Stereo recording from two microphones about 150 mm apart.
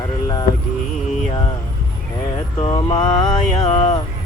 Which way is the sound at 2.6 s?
30° left (ahead or behind).